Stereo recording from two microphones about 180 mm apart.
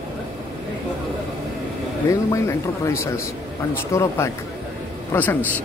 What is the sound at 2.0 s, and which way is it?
Speech, 15° left (ahead or behind).